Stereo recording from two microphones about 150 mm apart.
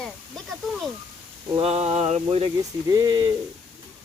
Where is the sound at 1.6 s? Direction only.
45° right (ahead or behind).